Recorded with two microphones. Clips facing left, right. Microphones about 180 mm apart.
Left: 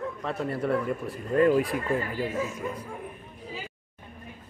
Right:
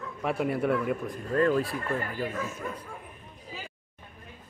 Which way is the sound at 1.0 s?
5° left (ahead or behind).